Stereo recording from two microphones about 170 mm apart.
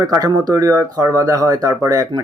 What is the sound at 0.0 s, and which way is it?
Speech, 20° right (ahead or behind).